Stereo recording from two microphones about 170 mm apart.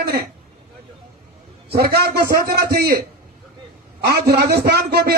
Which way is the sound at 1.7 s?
65° right (ahead or behind).